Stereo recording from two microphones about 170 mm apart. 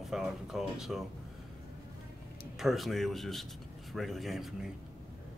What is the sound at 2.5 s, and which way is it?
Speech, centre (ahead or behind).